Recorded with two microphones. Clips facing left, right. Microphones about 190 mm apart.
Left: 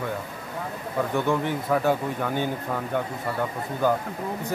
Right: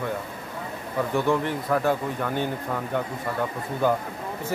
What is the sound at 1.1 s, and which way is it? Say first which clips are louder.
Speech: right 2 dB; centre (ahead or behind).